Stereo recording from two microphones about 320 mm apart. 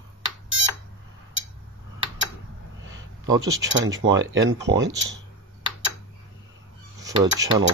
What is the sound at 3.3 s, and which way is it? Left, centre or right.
Speech, centre.